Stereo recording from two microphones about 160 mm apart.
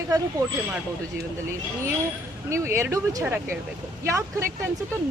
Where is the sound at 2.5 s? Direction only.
20° right (ahead or behind).